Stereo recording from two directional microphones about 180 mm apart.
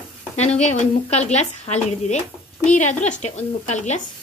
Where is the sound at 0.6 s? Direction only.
40° left (ahead or behind).